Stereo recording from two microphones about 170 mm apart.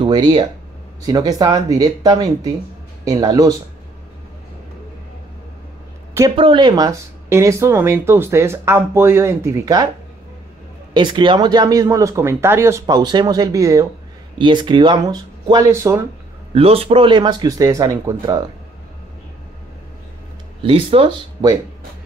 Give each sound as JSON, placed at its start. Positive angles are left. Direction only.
{"t": 0.0, "sound": "speech", "side_deg": -30}
{"t": 6.3, "sound": "speech", "side_deg": -30}
{"t": 10.9, "sound": "speech", "side_deg": -25}
{"t": 16.5, "sound": "speech", "side_deg": -35}
{"t": 20.6, "sound": "speech", "side_deg": -35}
{"t": 21.4, "sound": "speech", "side_deg": -20}